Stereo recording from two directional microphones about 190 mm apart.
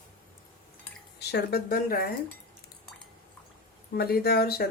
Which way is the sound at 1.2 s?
60° left (ahead or behind).